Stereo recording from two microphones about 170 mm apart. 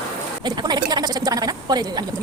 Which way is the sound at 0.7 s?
25° right (ahead or behind).